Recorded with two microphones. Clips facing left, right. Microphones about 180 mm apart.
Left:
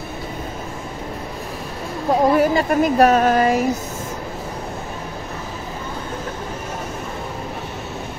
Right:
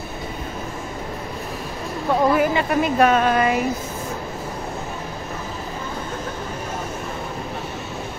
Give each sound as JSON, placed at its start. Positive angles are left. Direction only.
{"t": 2.0, "sound": "speech", "side_deg": 40}